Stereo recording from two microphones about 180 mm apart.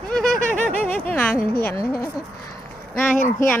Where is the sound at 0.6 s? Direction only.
35° right (ahead or behind).